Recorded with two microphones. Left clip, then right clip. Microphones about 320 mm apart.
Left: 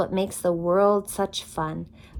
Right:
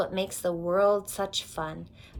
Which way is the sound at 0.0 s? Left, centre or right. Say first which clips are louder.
Left 4 dB; left.